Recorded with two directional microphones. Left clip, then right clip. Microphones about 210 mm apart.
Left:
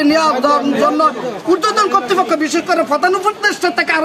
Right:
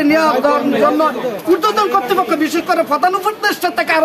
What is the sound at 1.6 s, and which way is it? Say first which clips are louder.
A man's voice: left 2 dB; 15° left (ahead or behind).